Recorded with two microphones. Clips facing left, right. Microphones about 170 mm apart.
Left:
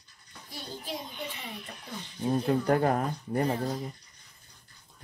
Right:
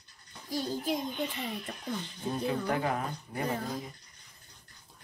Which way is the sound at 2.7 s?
45° left (ahead or behind).